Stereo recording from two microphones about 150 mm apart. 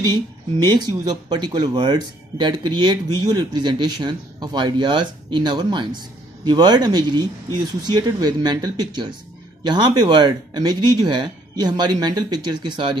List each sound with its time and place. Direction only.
0.0 s speech: 30° right (ahead or behind)